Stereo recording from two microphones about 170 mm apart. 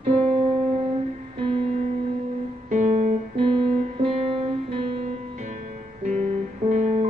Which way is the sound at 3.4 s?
30° right (ahead or behind).